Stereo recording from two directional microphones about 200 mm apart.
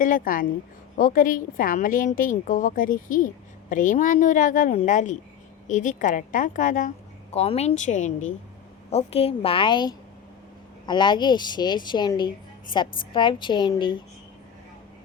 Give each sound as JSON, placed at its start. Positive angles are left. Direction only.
{"t": 0.0, "sound": "a woman's voice", "side_deg": 45}